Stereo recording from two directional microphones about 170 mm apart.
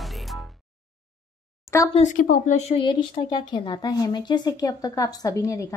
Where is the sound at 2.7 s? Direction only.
30° left (ahead or behind).